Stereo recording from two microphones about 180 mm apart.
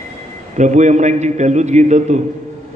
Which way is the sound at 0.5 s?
40° right (ahead or behind).